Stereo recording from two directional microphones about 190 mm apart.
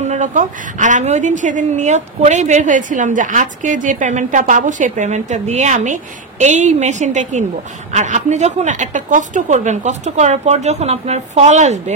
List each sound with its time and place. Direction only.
0.0 s a woman's voice: 40° right (ahead or behind)